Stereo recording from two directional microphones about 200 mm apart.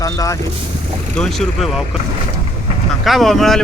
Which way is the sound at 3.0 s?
Centre (ahead or behind).